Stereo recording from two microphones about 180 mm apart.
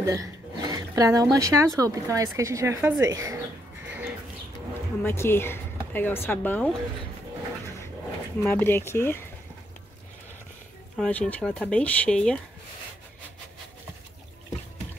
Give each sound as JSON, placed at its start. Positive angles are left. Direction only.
{"t": 0.0, "sound": "a woman's voice", "side_deg": -20}
{"t": 5.0, "sound": "speech", "side_deg": 15}
{"t": 8.4, "sound": "speech", "side_deg": 10}
{"t": 11.0, "sound": "speech", "side_deg": 10}